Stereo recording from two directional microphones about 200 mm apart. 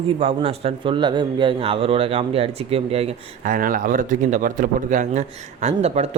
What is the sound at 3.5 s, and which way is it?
A man's voice, 45° right (ahead or behind).